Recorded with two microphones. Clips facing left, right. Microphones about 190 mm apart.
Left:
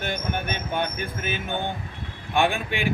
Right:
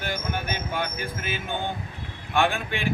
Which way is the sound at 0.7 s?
20° left (ahead or behind).